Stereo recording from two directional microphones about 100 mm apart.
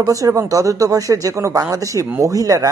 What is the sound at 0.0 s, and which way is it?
Speech, 35° right (ahead or behind).